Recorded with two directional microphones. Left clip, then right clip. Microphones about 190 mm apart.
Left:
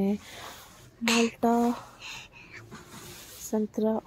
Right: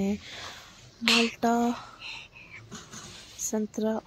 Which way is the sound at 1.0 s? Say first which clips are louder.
Right 2 dB; 40° left (ahead or behind).